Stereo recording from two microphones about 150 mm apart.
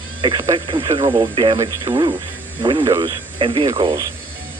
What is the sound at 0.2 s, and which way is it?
Speech, 35° right (ahead or behind).